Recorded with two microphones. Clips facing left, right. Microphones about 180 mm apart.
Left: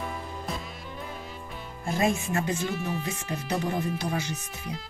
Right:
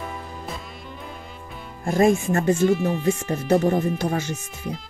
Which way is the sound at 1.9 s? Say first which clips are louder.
Right 8 dB; 50° right (ahead or behind).